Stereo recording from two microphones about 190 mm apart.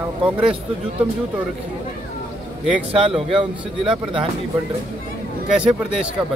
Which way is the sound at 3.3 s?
25° right (ahead or behind).